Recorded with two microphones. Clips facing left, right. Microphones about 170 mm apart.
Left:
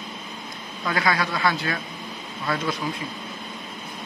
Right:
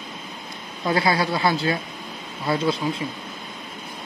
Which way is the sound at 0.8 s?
30° right (ahead or behind).